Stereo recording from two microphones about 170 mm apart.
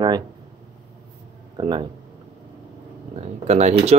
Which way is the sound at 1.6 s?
25° right (ahead or behind).